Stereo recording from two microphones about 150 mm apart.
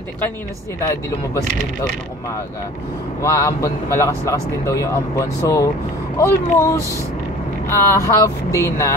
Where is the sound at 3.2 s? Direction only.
20° left (ahead or behind).